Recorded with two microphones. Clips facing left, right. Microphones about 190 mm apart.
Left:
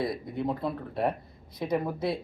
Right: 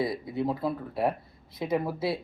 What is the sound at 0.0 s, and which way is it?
Speech, centre (ahead or behind).